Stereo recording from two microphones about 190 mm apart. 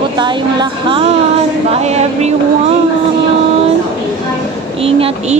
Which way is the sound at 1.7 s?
35° right (ahead or behind).